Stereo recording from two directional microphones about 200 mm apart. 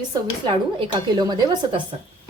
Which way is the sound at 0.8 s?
20° right (ahead or behind).